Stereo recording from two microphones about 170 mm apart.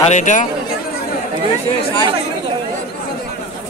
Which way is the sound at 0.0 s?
45° left (ahead or behind).